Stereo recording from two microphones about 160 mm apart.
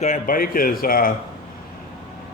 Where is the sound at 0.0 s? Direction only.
55° left (ahead or behind).